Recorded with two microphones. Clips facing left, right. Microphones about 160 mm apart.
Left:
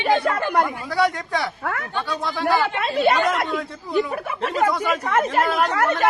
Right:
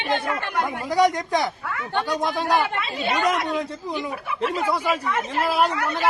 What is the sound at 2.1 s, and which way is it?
Speech, 15° right (ahead or behind).